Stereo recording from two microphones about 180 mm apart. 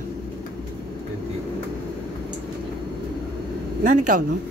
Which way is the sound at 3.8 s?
45° right (ahead or behind).